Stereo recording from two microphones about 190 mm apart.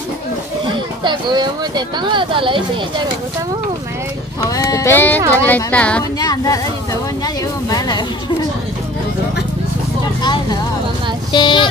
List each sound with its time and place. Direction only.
1.0 s speech: 25° right (ahead or behind)
4.4 s speech: 15° left (ahead or behind)
6.1 s speech: 20° left (ahead or behind)
10.2 s speech: 20° left (ahead or behind)